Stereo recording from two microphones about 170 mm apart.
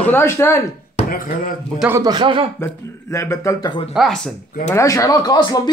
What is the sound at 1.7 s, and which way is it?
Speech, 10° right (ahead or behind).